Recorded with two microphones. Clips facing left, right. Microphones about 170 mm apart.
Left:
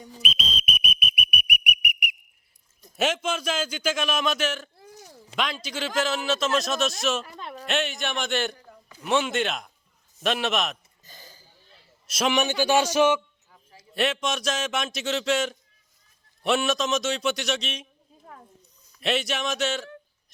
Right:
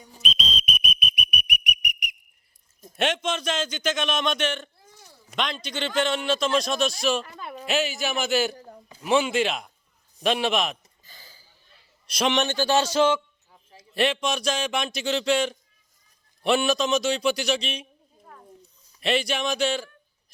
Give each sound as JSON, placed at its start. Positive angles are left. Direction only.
{"t": 0.2, "sound": "whistle", "side_deg": 5}
{"t": 2.9, "sound": "a man's voice", "side_deg": 5}
{"t": 8.5, "sound": "a sound", "side_deg": -35}
{"t": 9.0, "sound": "a man's voice", "side_deg": 0}
{"t": 12.0, "sound": "a man's voice", "side_deg": 0}
{"t": 13.7, "sound": "a man's voice", "side_deg": 0}
{"t": 18.9, "sound": "a man's voice", "side_deg": 0}